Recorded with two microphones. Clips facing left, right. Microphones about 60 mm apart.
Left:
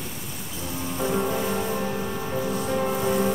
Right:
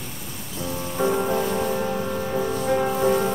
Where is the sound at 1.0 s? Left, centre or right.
Right.